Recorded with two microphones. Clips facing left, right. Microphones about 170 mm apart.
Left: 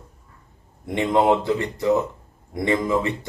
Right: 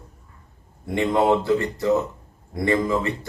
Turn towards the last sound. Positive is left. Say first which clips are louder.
# even
turn(degrees=20)  # may be behind; listen again after turning